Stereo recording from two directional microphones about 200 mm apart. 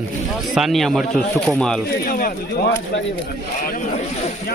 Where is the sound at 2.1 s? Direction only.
50° left (ahead or behind).